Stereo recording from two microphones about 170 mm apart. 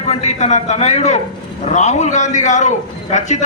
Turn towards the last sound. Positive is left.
turn(degrees=45)  # may be behind; listen again after turning